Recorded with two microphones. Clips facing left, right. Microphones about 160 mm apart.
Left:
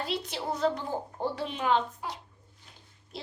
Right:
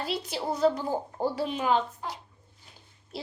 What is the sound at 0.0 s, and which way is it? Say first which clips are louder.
A woman's voice: right 2 dB; 5° right (ahead or behind).